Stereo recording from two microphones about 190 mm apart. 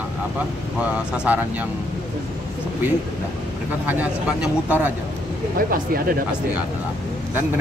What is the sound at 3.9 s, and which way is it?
Speech, 5° right (ahead or behind).